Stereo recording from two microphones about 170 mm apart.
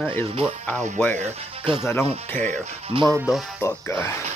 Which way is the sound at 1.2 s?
35° right (ahead or behind).